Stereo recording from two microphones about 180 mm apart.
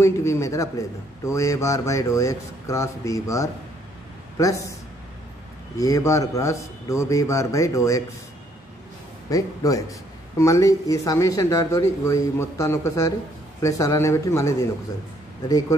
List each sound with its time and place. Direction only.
0.0 s a man's voice: 15° left (ahead or behind)
5.8 s a man's voice: 20° left (ahead or behind)
9.3 s a man's voice: 20° left (ahead or behind)